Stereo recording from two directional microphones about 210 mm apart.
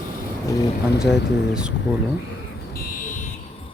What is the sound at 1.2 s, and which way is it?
Speech, 55° left (ahead or behind).